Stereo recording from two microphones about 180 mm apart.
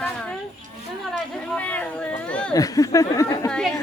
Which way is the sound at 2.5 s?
20° left (ahead or behind).